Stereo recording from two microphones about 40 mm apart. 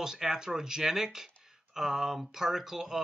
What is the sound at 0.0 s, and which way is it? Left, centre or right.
Speech, centre.